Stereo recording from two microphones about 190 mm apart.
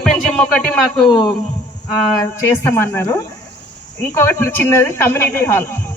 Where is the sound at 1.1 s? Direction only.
25° left (ahead or behind).